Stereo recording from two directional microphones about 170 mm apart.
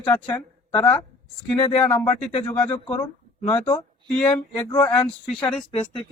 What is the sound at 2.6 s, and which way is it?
Speech, 10° left (ahead or behind).